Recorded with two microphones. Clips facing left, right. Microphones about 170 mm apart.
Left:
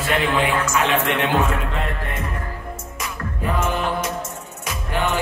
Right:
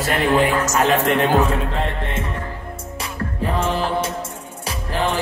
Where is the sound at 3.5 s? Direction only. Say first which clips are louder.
Right 2 dB; 30° right (ahead or behind).